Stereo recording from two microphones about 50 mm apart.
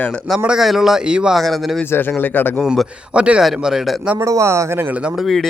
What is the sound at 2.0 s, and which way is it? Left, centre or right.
Speech, left.